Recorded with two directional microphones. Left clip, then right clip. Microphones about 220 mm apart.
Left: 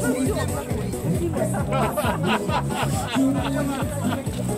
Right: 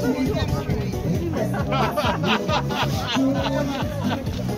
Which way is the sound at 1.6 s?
50° right (ahead or behind).